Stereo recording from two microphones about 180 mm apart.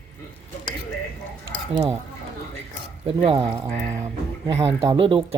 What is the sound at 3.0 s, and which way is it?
Speech, 30° right (ahead or behind).